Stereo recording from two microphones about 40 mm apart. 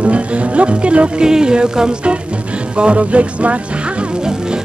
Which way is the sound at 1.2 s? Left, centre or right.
Centre.